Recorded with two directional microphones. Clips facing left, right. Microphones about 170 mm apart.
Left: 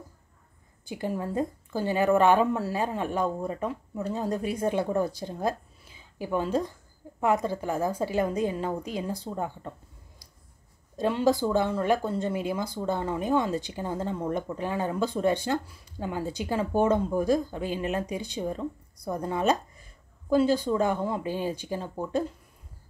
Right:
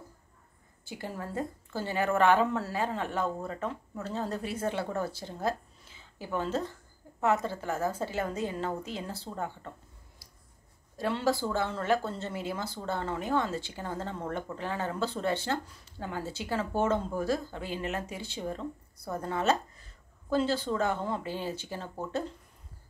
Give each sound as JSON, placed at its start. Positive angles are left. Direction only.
{"t": 0.8, "sound": "speech", "side_deg": 15}
{"t": 11.0, "sound": "speech", "side_deg": 15}